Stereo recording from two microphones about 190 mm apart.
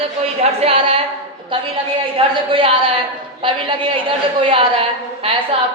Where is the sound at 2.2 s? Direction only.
30° right (ahead or behind).